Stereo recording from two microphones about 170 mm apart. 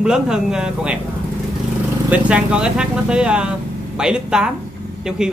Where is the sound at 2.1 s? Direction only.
5° right (ahead or behind).